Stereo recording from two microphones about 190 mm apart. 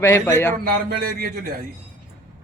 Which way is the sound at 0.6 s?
50° right (ahead or behind).